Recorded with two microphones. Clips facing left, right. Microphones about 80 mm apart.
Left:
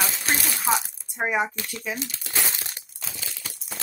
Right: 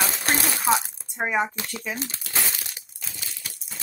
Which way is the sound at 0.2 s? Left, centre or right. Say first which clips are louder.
Right 2 dB; right.